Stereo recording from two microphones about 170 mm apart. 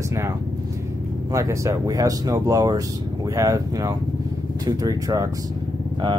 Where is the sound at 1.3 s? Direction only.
20° right (ahead or behind).